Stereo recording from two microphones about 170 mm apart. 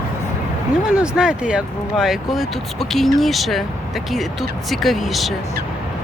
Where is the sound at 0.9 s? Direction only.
5° right (ahead or behind).